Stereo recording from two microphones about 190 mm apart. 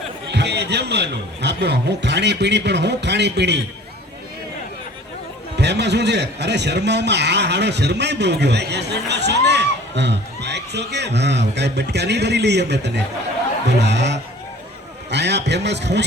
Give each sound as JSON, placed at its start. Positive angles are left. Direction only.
{"t": 0.3, "sound": "a man's voice", "side_deg": -60}
{"t": 5.5, "sound": "a man's voice", "side_deg": -65}